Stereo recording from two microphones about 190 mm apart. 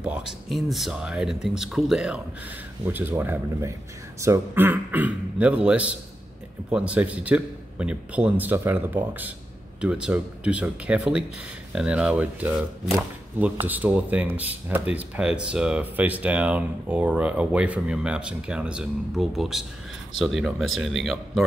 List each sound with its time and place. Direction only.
0.5 s speech: centre (ahead or behind)
13.7 s speech: 10° right (ahead or behind)